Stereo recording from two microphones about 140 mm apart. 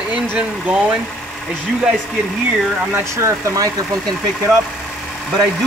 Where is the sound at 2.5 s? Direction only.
10° right (ahead or behind).